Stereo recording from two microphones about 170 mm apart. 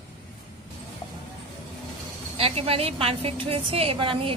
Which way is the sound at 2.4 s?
35° right (ahead or behind).